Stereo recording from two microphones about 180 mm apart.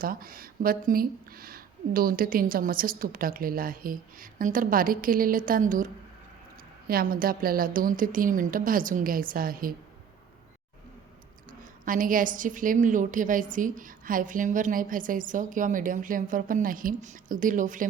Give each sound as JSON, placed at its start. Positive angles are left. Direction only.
{"t": 0.0, "sound": "a woman's voice", "side_deg": -50}
{"t": 11.6, "sound": "a woman's voice", "side_deg": -50}